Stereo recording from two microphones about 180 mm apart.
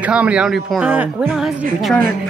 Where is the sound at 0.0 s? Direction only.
5° right (ahead or behind).